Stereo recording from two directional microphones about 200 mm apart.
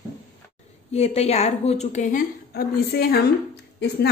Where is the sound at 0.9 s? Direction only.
30° left (ahead or behind).